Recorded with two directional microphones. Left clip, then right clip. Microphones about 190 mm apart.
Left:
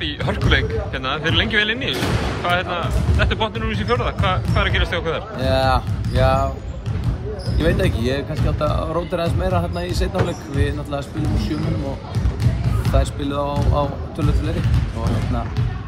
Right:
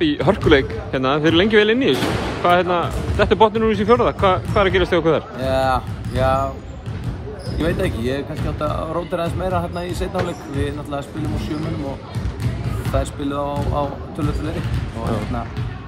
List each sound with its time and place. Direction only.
0.0 s a man's voice: 35° right (ahead or behind)
5.4 s speech: 10° right (ahead or behind)
7.5 s speech: 15° right (ahead or behind)
12.9 s speech: 10° right (ahead or behind)